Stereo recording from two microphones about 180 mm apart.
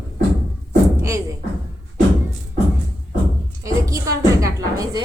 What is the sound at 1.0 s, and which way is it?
Music, 15° right (ahead or behind).